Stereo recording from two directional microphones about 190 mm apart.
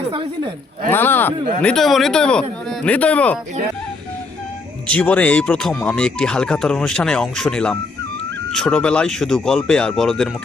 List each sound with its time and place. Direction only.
0.1 s speech: 25° right (ahead or behind)
0.9 s speech: 10° left (ahead or behind)
4.9 s speech: 5° left (ahead or behind)